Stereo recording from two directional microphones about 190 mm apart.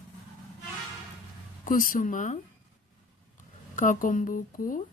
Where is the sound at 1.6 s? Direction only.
45° left (ahead or behind).